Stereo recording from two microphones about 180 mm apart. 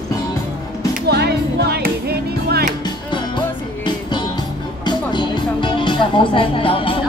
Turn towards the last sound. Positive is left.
turn(degrees=30)  # may be behind; listen again after turning